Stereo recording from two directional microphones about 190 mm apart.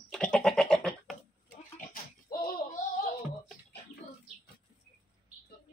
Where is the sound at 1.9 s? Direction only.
45° left (ahead or behind).